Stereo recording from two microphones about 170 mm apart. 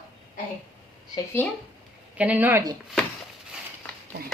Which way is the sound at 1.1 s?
10° left (ahead or behind).